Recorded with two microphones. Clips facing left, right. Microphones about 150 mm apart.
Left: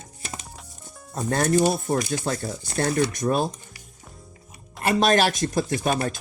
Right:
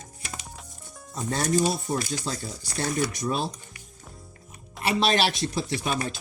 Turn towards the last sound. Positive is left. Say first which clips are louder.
# left 5 dB
turn(degrees=50)  # may be behind; listen again after turning